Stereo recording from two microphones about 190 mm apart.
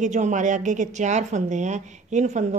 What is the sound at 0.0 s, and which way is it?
A woman's voice, 40° right (ahead or behind).